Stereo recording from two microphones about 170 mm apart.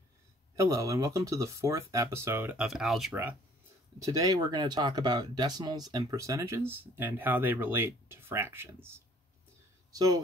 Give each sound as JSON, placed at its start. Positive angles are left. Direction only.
{"t": 0.6, "sound": "speech", "side_deg": -20}
{"t": 4.0, "sound": "speech", "side_deg": -20}